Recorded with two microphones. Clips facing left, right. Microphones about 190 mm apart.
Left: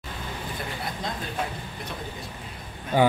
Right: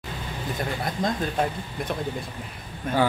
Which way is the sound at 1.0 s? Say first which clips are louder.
Right 9 dB; 45° right (ahead or behind).